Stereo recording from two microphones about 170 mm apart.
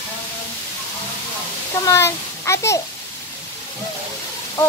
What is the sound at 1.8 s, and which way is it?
A child's voice, 15° left (ahead or behind).